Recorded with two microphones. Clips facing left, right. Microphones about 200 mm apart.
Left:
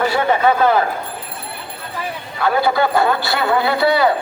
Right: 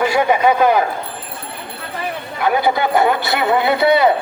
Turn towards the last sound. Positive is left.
turn(degrees=-20)  # may be behind; listen again after turning